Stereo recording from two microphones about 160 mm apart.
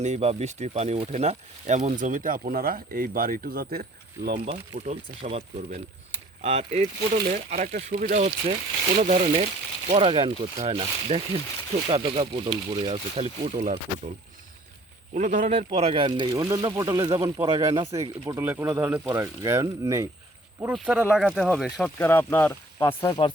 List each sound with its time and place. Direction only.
0.0 s speech: 45° right (ahead or behind); by 4.4 s 75° right (ahead or behind)
4.4 s speech: 40° right (ahead or behind)
7.3 s speech: 50° right (ahead or behind)
15.1 s speech: 45° right (ahead or behind); by 20.1 s 20° right (ahead or behind)
20.7 s speech: 5° right (ahead or behind)
21.9 s speech: 10° left (ahead or behind)